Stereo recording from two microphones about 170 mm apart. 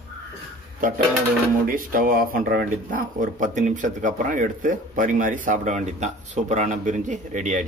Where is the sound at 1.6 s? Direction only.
55° right (ahead or behind).